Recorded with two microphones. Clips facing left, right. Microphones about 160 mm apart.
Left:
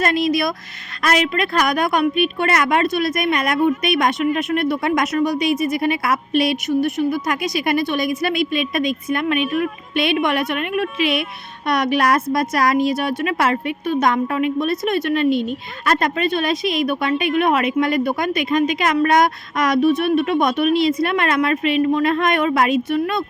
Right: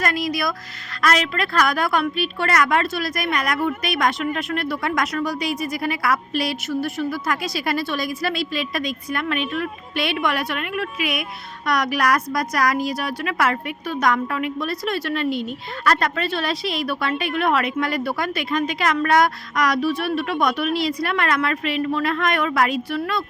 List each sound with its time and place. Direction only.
0.0 s a woman's voice: 25° left (ahead or behind)